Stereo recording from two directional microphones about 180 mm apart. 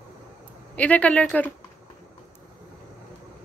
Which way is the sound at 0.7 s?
10° left (ahead or behind).